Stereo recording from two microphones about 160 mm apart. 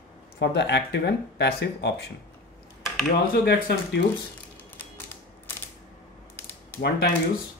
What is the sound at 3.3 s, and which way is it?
Speech, 75° left (ahead or behind).